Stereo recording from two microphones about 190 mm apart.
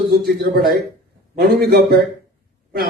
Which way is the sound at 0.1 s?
50° right (ahead or behind).